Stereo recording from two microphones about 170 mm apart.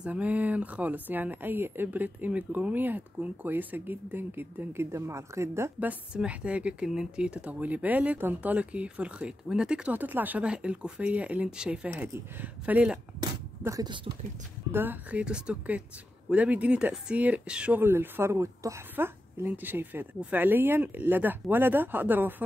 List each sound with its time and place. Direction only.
0.0 s a woman's voice: 10° right (ahead or behind)
13.2 s speech: 20° right (ahead or behind)
14.7 s a woman's voice: 10° right (ahead or behind)